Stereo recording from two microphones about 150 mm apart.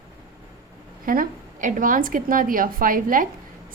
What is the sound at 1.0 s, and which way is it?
A woman's voice, 70° right (ahead or behind).